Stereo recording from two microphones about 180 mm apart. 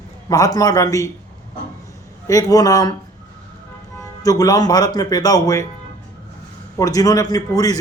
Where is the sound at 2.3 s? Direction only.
20° left (ahead or behind).